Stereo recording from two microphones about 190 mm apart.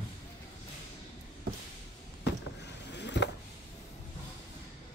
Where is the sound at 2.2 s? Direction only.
65° left (ahead or behind).